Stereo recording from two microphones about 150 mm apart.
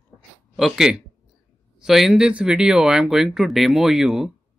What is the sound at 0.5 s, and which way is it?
Speech, centre (ahead or behind).